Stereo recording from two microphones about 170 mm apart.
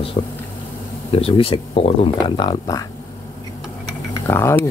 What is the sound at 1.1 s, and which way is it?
Speech, 35° left (ahead or behind).